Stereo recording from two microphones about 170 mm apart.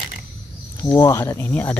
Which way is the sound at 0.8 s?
20° left (ahead or behind).